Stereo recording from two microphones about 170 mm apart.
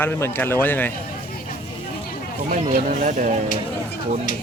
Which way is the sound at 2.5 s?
50° right (ahead or behind).